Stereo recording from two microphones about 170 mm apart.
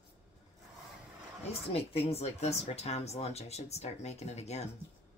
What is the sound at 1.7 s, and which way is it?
Speech, 35° left (ahead or behind).